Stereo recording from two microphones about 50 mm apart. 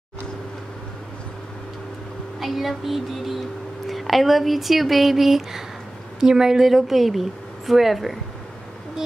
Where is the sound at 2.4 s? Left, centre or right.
Centre.